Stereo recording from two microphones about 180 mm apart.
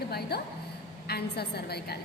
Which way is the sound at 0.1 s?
60° left (ahead or behind).